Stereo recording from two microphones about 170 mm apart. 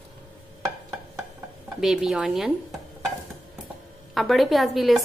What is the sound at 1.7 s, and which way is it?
A woman's voice, 5° right (ahead or behind).